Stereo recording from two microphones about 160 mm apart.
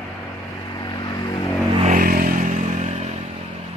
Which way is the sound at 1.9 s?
60° right (ahead or behind).